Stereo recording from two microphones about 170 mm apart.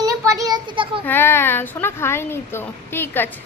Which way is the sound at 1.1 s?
15° left (ahead or behind).